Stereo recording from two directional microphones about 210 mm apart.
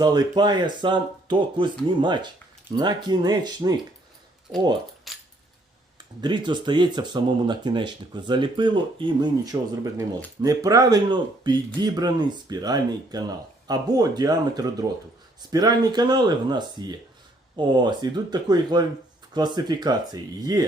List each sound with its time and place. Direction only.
0.0 s speech: 20° right (ahead or behind)
5.1 s a sound: centre (ahead or behind)
6.2 s speech: 20° right (ahead or behind)